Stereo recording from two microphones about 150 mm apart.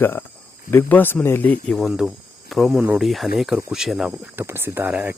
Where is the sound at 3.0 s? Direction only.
Centre (ahead or behind).